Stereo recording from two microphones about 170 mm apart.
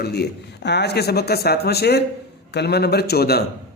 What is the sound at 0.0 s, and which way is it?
A man's voice, 70° left (ahead or behind).